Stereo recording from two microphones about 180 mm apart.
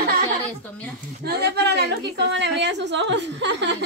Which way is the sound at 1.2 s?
65° right (ahead or behind).